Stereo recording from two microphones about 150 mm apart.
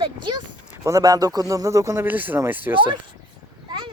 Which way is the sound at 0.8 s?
20° right (ahead or behind).